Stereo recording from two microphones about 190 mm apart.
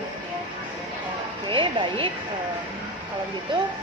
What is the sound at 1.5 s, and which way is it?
Speech, 25° right (ahead or behind).